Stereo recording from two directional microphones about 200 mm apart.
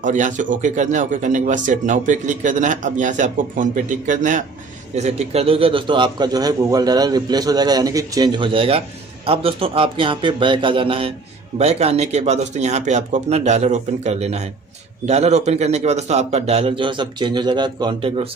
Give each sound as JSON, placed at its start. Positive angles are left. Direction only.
{"t": 0.0, "sound": "a man's voice", "side_deg": -40}